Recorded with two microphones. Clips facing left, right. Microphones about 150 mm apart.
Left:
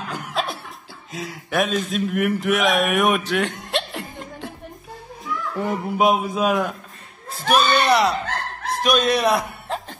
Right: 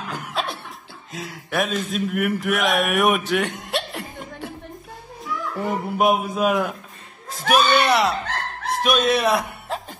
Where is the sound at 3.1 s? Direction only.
5° right (ahead or behind).